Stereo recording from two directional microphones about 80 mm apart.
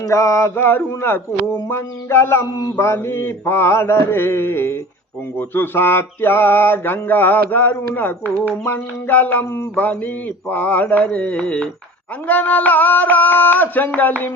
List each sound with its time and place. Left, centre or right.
0.0 s mantra: left
2.6 s mantra: left; by 11.7 s centre
12.3 s mantra: left